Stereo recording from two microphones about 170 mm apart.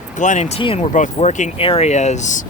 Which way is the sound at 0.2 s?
45° left (ahead or behind).